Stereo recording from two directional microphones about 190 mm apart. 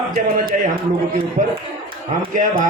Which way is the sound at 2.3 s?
45° right (ahead or behind).